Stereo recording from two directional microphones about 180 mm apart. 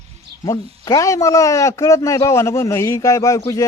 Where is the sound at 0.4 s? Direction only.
20° left (ahead or behind).